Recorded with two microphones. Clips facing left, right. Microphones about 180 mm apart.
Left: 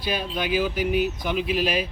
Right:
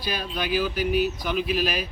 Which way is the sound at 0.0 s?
20° left (ahead or behind).